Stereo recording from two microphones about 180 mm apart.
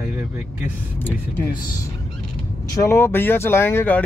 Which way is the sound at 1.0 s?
10° left (ahead or behind).